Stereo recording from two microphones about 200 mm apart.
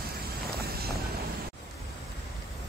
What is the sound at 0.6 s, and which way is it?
Vehicle, 50° right (ahead or behind).